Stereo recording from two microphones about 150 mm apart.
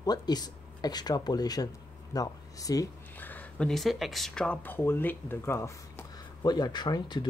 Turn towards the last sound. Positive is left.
turn(degrees=30)  # may be behind; listen again after turning